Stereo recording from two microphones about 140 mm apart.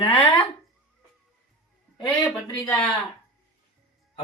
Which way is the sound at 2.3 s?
10° left (ahead or behind).